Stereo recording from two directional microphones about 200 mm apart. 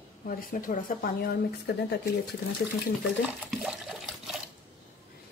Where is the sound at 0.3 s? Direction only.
45° left (ahead or behind).